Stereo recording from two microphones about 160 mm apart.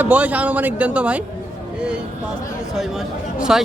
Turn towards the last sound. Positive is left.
turn(degrees=-5)  # may be behind; listen again after turning